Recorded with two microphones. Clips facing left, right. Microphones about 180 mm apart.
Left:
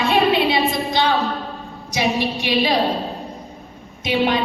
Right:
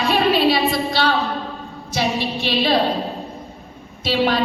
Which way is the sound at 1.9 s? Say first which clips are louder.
Left 1 dB; 15° left (ahead or behind).